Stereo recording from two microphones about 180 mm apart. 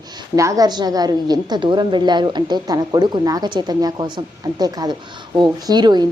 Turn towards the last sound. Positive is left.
turn(degrees=-25)  # may be behind; listen again after turning